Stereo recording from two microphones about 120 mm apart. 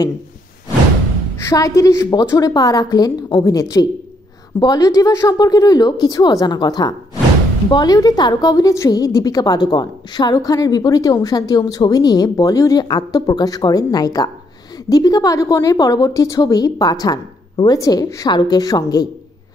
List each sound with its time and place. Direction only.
1.4 s a woman's voice: 25° left (ahead or behind)